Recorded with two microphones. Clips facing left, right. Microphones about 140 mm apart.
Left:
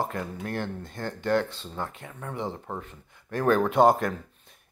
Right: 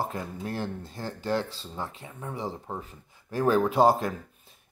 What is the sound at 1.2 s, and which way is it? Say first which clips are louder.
Speech: left 4 dB; 35° right (ahead or behind).